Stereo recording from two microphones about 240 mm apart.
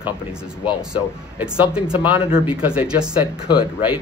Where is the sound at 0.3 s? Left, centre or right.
Centre.